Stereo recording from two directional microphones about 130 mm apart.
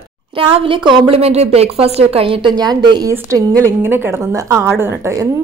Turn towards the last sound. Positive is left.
turn(degrees=-20)  # may be behind; listen again after turning